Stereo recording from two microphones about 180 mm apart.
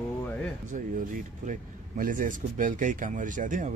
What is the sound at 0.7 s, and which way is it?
Speech, 45° right (ahead or behind).